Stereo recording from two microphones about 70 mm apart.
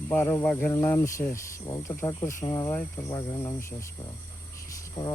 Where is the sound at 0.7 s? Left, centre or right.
Left.